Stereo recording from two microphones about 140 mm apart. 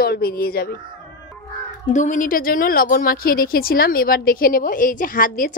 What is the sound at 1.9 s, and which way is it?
A woman's voice, 65° left (ahead or behind).